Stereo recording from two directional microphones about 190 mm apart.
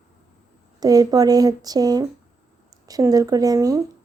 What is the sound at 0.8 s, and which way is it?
Speech, 20° right (ahead or behind).